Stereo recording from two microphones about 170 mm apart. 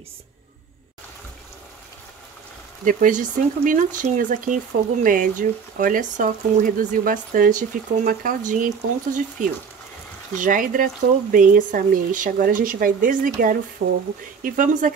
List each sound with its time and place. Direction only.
2.8 s a woman's voice: 50° right (ahead or behind)
13.8 s speech: 70° right (ahead or behind)
14.4 s a woman's voice: 50° right (ahead or behind)